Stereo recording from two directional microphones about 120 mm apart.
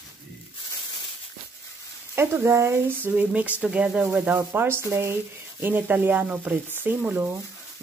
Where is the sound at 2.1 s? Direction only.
20° right (ahead or behind).